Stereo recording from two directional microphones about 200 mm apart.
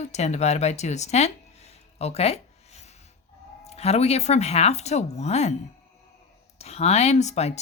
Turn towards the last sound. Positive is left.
turn(degrees=35)  # may be behind; listen again after turning